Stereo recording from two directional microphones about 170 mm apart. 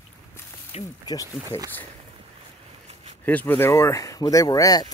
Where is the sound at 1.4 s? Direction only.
20° right (ahead or behind).